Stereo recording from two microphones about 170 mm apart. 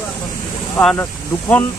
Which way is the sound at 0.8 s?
5° left (ahead or behind).